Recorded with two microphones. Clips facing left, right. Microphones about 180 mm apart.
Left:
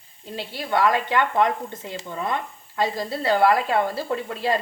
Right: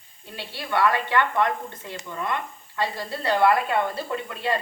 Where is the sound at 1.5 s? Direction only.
25° left (ahead or behind).